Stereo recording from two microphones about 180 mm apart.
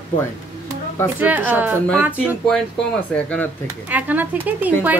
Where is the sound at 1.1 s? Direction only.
10° right (ahead or behind).